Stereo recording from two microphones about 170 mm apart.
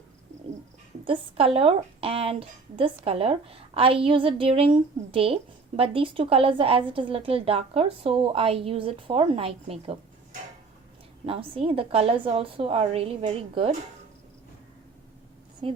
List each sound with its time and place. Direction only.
1.0 s a woman's voice: 30° right (ahead or behind)
11.3 s a woman's voice: 30° right (ahead or behind)
15.6 s a woman's voice: 35° right (ahead or behind)